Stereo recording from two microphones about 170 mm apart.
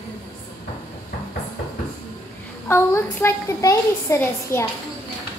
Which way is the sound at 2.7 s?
15° left (ahead or behind).